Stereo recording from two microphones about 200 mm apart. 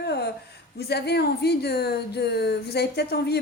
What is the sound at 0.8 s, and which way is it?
Speech, 55° left (ahead or behind).